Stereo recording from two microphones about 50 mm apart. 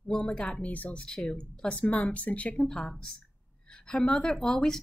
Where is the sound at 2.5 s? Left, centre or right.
Centre.